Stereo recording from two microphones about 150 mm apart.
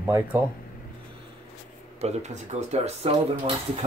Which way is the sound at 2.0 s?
50° right (ahead or behind).